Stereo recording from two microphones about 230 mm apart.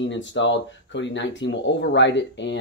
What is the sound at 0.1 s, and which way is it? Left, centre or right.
Speech, left.